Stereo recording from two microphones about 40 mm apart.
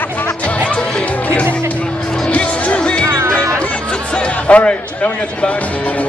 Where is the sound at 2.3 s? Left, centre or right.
Left.